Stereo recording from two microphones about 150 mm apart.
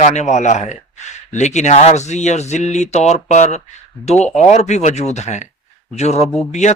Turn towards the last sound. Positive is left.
turn(degrees=50)  # may be behind; listen again after turning